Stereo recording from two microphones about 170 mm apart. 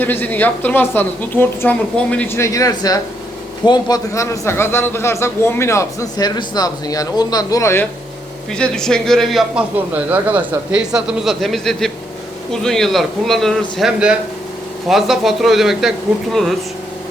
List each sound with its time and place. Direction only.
0.0 s a man's voice: 10° left (ahead or behind)
8.5 s speech: 5° left (ahead or behind)